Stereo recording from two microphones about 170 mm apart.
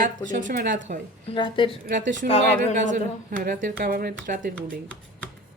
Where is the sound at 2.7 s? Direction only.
50° right (ahead or behind).